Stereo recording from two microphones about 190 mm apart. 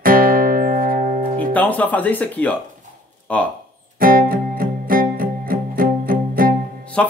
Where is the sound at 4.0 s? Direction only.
50° right (ahead or behind).